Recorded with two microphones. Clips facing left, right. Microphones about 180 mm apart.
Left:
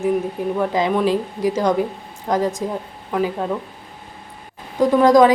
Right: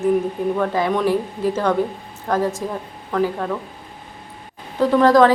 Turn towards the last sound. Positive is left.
turn(degrees=15)  # may be behind; listen again after turning